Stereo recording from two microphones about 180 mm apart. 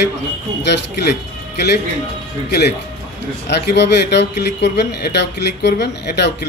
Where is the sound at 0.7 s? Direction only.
65° left (ahead or behind).